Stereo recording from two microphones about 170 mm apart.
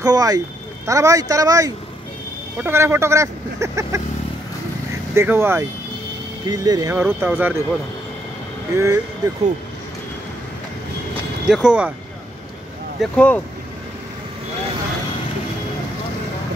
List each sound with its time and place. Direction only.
0.0 s speech: 20° right (ahead or behind)
5.1 s speech: 15° right (ahead or behind)
8.7 s speech: 20° right (ahead or behind)
11.4 s speech: centre (ahead or behind)
13.0 s speech: 5° left (ahead or behind)